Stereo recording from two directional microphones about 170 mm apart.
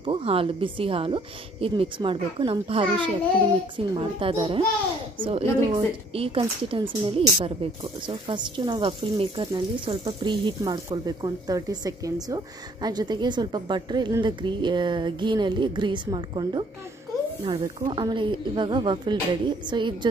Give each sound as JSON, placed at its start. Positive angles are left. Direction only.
{"t": 0.0, "sound": "a woman's voice", "side_deg": -35}
{"t": 17.7, "sound": "speech", "side_deg": -25}